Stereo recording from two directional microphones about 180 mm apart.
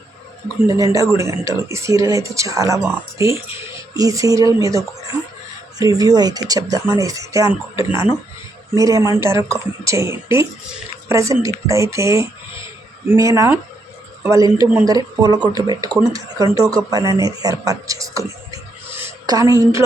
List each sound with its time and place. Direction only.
0.7 s speech: 15° right (ahead or behind)